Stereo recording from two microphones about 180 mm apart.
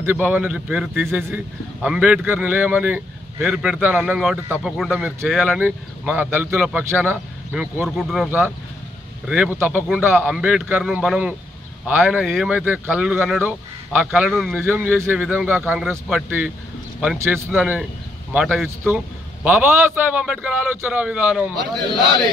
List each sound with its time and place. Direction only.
0.0 s a man's voice: 10° right (ahead or behind)
9.3 s a man's voice: 10° right (ahead or behind)